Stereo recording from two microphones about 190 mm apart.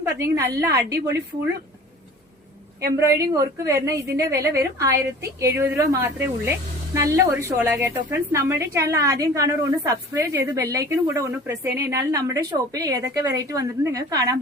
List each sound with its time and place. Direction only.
0.0 s a woman's voice: 15° right (ahead or behind)
3.0 s a woman's voice: 15° right (ahead or behind)